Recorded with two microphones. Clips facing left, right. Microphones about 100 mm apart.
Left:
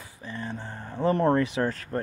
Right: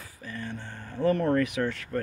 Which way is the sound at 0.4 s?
30° left (ahead or behind).